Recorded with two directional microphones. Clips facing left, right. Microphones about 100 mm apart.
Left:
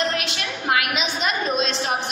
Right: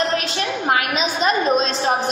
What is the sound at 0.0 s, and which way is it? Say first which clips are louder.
A woman's voice: right 4 dB; 35° right (ahead or behind).